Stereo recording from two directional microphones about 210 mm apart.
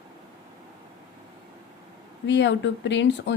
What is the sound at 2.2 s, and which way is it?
Speech, 55° left (ahead or behind).